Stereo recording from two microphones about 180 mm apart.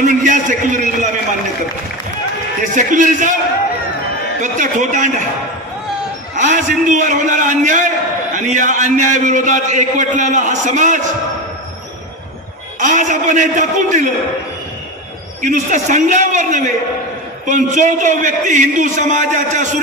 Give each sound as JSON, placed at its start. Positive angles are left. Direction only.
{"t": 0.0, "sound": "a man's voice", "side_deg": -45}
{"t": 2.7, "sound": "a man's voice", "side_deg": -45}
{"t": 4.4, "sound": "a man's voice", "side_deg": -45}
{"t": 6.3, "sound": "a man's voice", "side_deg": -45}
{"t": 12.7, "sound": "a man's voice", "side_deg": -45}
{"t": 15.4, "sound": "a man's voice", "side_deg": -45}